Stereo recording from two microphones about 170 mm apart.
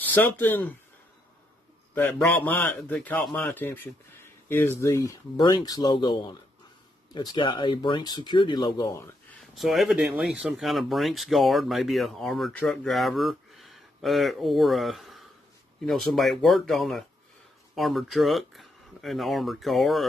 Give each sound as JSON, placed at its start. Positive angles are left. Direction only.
{"t": 0.1, "sound": "a man's voice", "side_deg": 10}
{"t": 2.0, "sound": "a man's voice", "side_deg": 10}
{"t": 9.6, "sound": "speech", "side_deg": 0}